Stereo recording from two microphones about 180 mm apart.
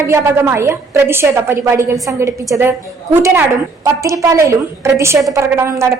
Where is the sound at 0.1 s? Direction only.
15° right (ahead or behind).